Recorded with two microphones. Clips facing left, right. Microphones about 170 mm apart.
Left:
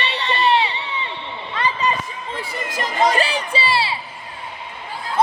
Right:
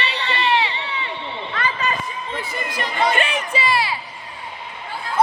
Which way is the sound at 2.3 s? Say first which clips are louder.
Left 1 dB; 40° left (ahead or behind).